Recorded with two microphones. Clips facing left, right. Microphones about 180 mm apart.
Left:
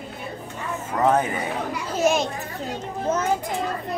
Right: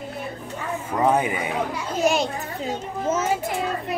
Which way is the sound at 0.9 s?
10° right (ahead or behind).